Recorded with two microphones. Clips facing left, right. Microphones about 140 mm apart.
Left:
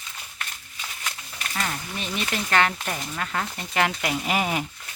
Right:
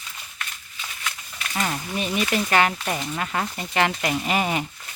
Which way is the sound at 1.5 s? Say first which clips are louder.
Right 3 dB; 20° right (ahead or behind).